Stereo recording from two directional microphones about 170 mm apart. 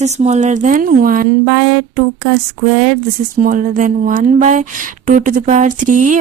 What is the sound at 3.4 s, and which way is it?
Speech, 50° right (ahead or behind).